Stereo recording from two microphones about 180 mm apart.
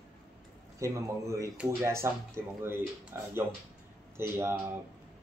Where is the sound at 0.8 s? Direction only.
15° right (ahead or behind).